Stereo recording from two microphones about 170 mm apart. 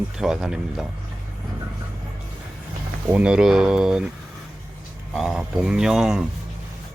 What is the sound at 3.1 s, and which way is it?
Speech, 5° right (ahead or behind).